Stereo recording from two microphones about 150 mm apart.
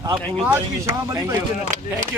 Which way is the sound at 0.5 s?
20° right (ahead or behind).